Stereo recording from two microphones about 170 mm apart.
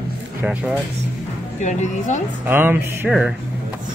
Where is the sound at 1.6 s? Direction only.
45° left (ahead or behind).